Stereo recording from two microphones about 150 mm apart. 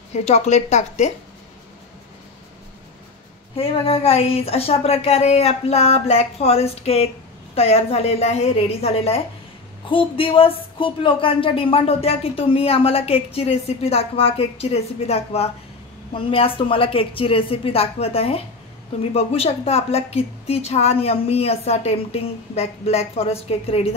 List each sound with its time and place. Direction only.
0.1 s a woman's voice: 45° left (ahead or behind)
3.5 s a woman's voice: 40° left (ahead or behind)